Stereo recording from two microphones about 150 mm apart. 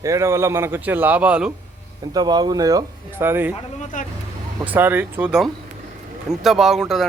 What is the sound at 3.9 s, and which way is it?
Speech, 60° left (ahead or behind).